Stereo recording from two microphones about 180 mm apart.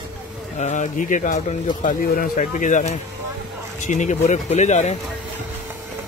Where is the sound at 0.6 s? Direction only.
40° left (ahead or behind).